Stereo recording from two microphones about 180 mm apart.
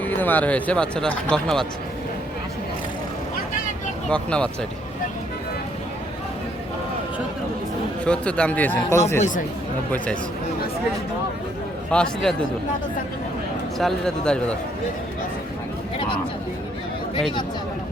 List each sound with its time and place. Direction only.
0.0 s speech: 10° left (ahead or behind)
4.1 s speech: 5° left (ahead or behind)
8.0 s speech: 5° left (ahead or behind)
11.9 s speech: 5° left (ahead or behind)
13.7 s speech: centre (ahead or behind)
16.0 s a sound: 25° left (ahead or behind)